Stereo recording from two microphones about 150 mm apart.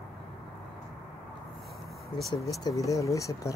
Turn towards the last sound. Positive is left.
turn(degrees=20)  # may be behind; listen again after turning